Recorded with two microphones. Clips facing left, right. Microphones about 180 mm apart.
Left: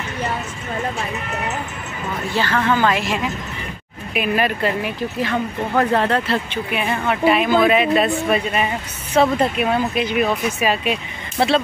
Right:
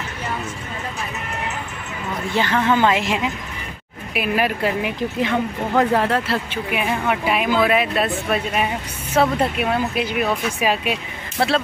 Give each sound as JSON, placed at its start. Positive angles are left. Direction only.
{"t": 2.3, "sound": "a woman's voice", "side_deg": -20}
{"t": 4.1, "sound": "speech", "side_deg": -5}
{"t": 11.3, "sound": "speech", "side_deg": 0}